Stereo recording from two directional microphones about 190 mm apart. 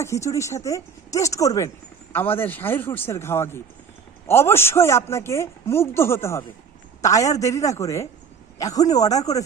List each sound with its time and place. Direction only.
0.0 s a woman's voice: 15° left (ahead or behind)